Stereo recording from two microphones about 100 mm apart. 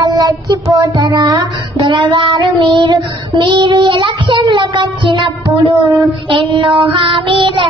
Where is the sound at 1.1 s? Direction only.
45° right (ahead or behind).